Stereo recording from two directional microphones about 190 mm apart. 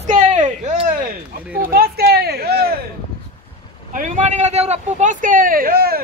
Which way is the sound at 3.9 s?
45° right (ahead or behind).